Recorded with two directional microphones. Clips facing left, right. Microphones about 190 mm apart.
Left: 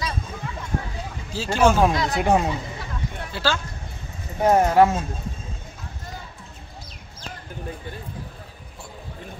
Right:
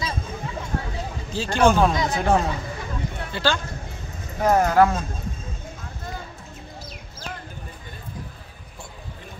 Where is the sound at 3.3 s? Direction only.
5° left (ahead or behind).